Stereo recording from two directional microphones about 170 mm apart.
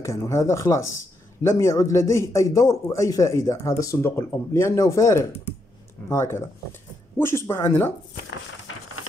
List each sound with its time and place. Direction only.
0.0 s a man's voice: 15° left (ahead or behind)